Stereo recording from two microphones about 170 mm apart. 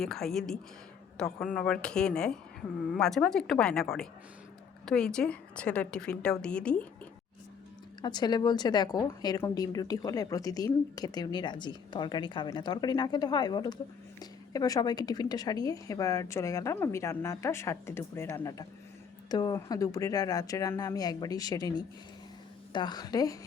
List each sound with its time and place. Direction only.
0.0 s a woman's voice: centre (ahead or behind)
4.9 s a woman's voice: 5° left (ahead or behind)
8.0 s a woman's voice: 25° left (ahead or behind)